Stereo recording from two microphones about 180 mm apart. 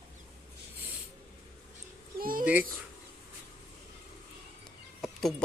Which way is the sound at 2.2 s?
50° right (ahead or behind).